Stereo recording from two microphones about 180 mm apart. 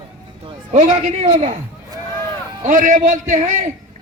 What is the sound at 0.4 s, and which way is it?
A man's voice, 40° right (ahead or behind).